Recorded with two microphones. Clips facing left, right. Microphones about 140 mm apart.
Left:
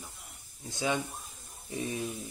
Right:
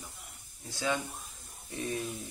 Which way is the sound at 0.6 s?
20° left (ahead or behind).